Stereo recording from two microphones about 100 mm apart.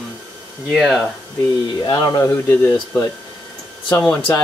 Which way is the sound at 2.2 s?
15° left (ahead or behind).